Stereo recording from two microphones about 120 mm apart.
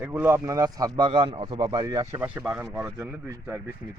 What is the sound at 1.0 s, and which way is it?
Speech, 45° right (ahead or behind).